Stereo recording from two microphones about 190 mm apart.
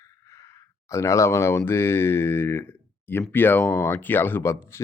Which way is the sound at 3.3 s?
10° left (ahead or behind).